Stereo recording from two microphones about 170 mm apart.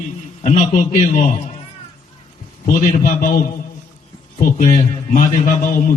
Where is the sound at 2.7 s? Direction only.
50° left (ahead or behind).